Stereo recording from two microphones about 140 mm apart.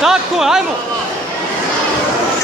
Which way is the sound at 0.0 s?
5° right (ahead or behind).